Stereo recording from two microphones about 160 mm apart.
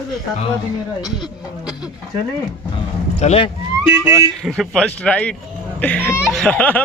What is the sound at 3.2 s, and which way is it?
Speech, 40° left (ahead or behind).